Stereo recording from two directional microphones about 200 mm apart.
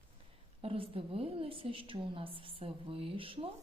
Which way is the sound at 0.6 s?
25° right (ahead or behind).